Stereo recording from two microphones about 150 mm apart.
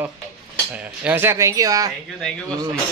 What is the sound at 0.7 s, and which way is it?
Cutlery, 10° right (ahead or behind).